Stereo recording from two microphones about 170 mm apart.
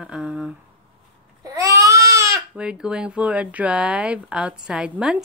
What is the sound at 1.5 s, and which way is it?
Baby cry, 20° right (ahead or behind).